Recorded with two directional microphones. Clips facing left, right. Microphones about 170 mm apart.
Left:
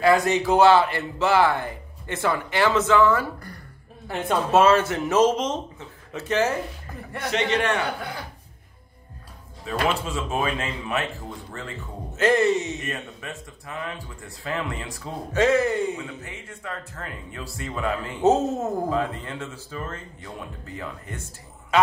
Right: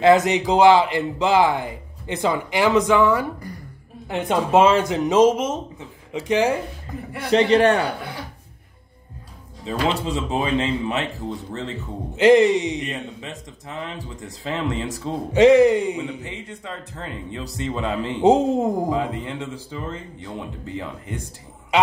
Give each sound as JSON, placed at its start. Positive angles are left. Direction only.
{"t": 0.0, "sound": "speech", "side_deg": -20}
{"t": 7.2, "sound": "a man's voice", "side_deg": -30}
{"t": 9.7, "sound": "speech", "side_deg": -20}